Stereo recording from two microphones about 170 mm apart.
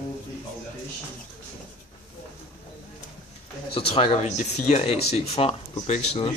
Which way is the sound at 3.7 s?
35° left (ahead or behind).